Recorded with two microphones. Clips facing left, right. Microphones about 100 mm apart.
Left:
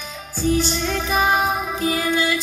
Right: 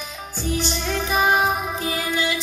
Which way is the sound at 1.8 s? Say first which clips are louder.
Left 6 dB; 35° left (ahead or behind).